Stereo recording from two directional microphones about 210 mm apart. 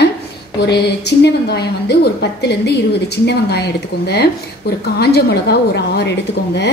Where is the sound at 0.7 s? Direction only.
50° left (ahead or behind).